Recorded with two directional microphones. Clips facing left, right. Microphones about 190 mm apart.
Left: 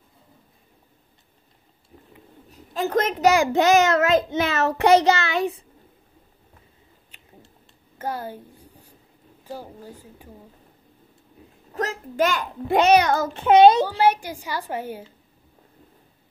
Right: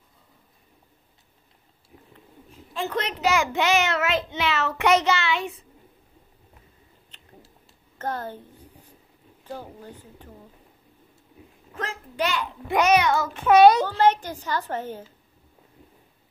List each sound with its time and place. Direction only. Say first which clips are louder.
2.5 s a child's voice: left 6 dB; 40° left (ahead or behind)
7.1 s a sound: even; 10° left (ahead or behind)
8.0 s a woman's voice: left 1 dB; 10° left (ahead or behind)
11.7 s a child's voice: left 6 dB; 40° left (ahead or behind)
12.7 s a child's voice: left 3 dB; 35° left (ahead or behind)
13.4 s a child's voice: left 1 dB; 25° left (ahead or behind)
13.8 s a woman's voice: even; 10° left (ahead or behind)